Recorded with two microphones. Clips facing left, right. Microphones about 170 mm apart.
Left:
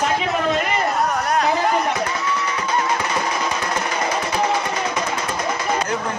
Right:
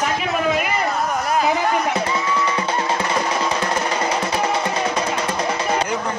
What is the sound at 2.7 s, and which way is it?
Music, 30° right (ahead or behind).